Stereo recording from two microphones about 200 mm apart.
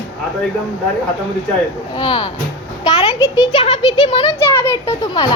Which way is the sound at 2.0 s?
25° left (ahead or behind).